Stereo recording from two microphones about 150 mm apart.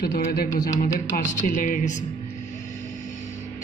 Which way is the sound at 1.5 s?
60° left (ahead or behind).